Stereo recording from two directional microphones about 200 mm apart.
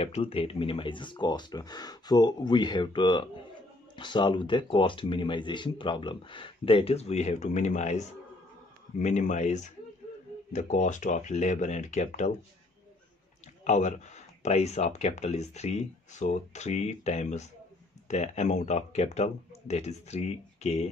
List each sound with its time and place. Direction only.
0.0 s speech: 30° left (ahead or behind)
13.7 s speech: 35° left (ahead or behind)